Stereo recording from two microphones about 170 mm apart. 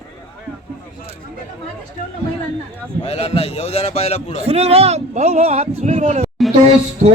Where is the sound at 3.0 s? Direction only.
35° left (ahead or behind).